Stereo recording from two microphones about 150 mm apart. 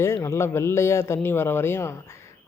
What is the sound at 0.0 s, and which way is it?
A man's voice, 20° left (ahead or behind).